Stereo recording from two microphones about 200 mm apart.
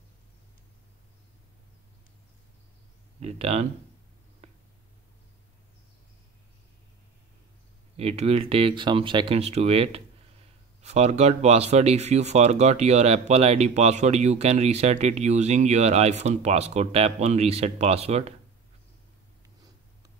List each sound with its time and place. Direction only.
3.2 s speech: 30° right (ahead or behind)
8.0 s speech: 30° right (ahead or behind)